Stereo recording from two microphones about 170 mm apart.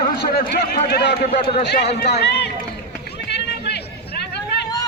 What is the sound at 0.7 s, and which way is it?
A man's voice, 70° left (ahead or behind).